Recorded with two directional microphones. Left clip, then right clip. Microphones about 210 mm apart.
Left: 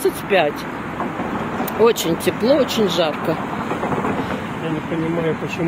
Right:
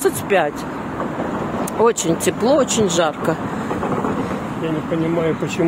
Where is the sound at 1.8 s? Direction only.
15° right (ahead or behind).